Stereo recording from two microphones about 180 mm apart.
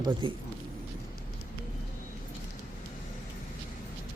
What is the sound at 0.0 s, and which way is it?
Speech, 30° right (ahead or behind).